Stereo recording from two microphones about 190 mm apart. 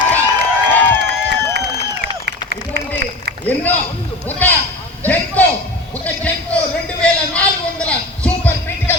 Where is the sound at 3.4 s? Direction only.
10° left (ahead or behind).